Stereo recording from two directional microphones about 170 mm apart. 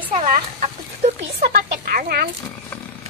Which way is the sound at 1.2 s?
65° right (ahead or behind).